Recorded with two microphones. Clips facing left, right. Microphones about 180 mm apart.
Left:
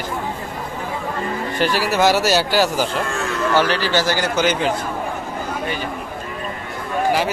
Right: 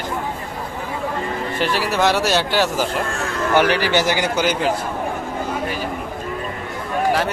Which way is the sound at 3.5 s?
15° right (ahead or behind).